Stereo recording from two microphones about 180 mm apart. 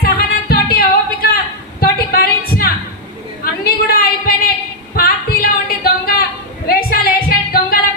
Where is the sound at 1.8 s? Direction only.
55° left (ahead or behind).